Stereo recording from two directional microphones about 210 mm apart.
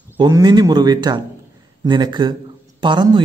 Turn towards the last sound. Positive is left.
turn(degrees=-20)  # may be behind; listen again after turning